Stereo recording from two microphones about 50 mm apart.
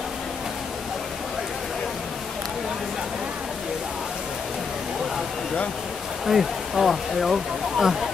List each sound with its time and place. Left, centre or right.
6.2 s speech: centre